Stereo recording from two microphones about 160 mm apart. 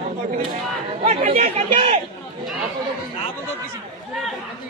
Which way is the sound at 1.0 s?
40° right (ahead or behind).